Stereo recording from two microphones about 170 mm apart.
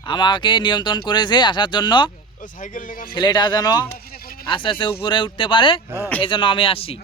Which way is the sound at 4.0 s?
60° left (ahead or behind).